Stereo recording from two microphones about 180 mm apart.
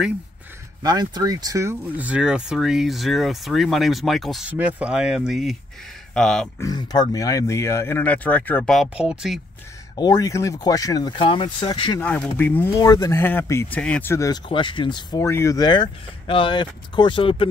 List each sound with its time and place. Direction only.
0.8 s speech: 20° right (ahead or behind); by 6.5 s 5° left (ahead or behind)
6.6 s speech: 20° left (ahead or behind); by 9.4 s 5° right (ahead or behind)
9.9 s speech: 20° left (ahead or behind)
12.0 s speech: 10° left (ahead or behind); by 17.5 s 30° left (ahead or behind)